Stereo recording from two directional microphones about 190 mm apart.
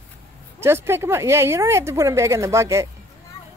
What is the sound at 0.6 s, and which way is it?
Speech, 15° right (ahead or behind).